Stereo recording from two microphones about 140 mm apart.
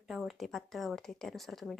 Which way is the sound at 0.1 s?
Centre (ahead or behind).